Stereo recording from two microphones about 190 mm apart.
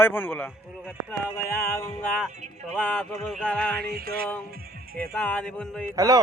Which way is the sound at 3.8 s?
55° right (ahead or behind).